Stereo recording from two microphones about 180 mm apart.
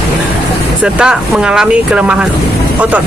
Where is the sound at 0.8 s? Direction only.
5° right (ahead or behind).